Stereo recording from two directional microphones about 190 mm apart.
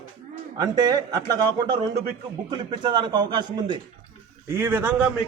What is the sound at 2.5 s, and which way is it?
A man's voice, 25° right (ahead or behind).